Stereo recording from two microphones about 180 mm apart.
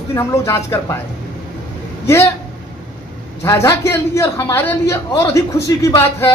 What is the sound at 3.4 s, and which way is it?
A man's voice, 15° left (ahead or behind).